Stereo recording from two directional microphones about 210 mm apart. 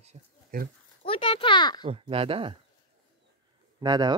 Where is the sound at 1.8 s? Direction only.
25° right (ahead or behind).